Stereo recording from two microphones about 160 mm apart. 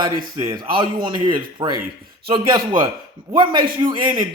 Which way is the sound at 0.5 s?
30° right (ahead or behind).